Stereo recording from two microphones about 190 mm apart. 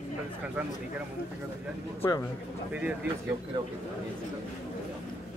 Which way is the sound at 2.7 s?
5° right (ahead or behind).